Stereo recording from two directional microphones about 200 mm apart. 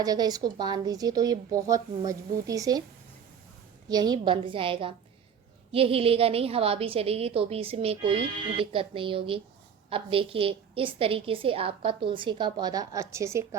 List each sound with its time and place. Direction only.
0.0 s a woman's voice: 20° right (ahead or behind)
3.8 s a woman's voice: 20° right (ahead or behind)